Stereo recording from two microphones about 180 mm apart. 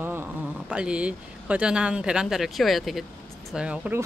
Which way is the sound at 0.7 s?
5° right (ahead or behind).